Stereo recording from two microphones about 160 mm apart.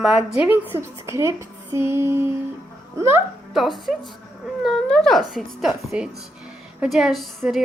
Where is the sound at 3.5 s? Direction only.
Centre (ahead or behind).